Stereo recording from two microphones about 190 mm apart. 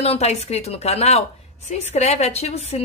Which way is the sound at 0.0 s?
35° left (ahead or behind).